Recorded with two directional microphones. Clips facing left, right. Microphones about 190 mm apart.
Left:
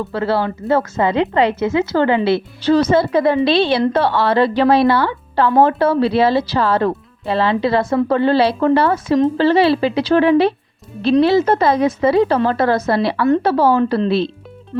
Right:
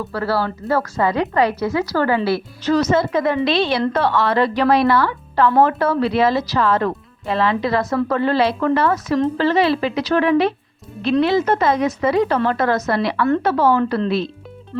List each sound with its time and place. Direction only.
0.0 s a woman's voice: 25° left (ahead or behind)